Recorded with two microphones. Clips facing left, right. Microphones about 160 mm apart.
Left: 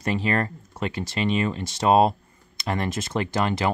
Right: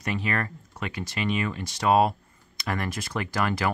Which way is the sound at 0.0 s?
30° left (ahead or behind).